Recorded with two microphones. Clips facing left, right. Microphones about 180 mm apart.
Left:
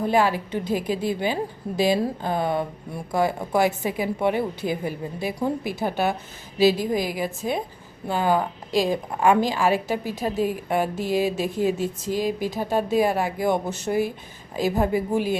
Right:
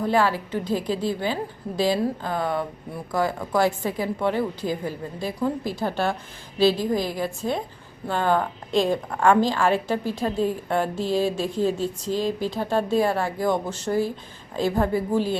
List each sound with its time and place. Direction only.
0.0 s a woman's voice: 15° left (ahead or behind)
3.5 s a woman's voice: 10° left (ahead or behind)